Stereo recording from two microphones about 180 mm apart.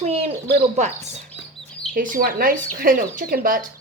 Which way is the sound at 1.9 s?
50° right (ahead or behind).